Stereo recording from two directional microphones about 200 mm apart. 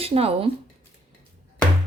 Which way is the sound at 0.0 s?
30° right (ahead or behind).